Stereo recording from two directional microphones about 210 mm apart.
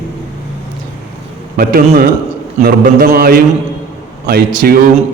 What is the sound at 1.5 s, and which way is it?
A man's voice, 45° right (ahead or behind).